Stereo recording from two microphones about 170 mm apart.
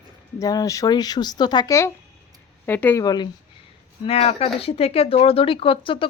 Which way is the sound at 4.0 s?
35° left (ahead or behind).